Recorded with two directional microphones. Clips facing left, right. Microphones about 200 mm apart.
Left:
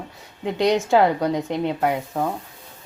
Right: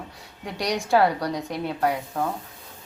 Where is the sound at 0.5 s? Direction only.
20° left (ahead or behind).